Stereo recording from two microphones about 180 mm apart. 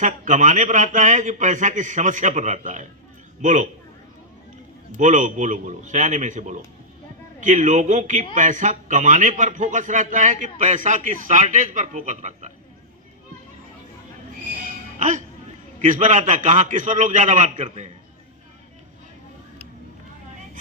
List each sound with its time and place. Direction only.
0.0 s a man's voice: 45° right (ahead or behind)
4.9 s a man's voice: 45° right (ahead or behind)
14.9 s a man's voice: 45° right (ahead or behind)